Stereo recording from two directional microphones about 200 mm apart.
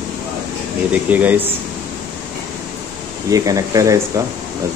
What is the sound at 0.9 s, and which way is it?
Speech, 10° right (ahead or behind).